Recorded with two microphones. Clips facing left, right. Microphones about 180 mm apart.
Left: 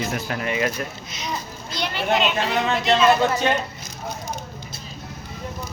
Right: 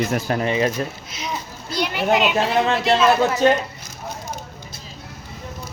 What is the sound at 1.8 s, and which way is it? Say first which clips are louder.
Speech: right 3 dB; 10° right (ahead or behind).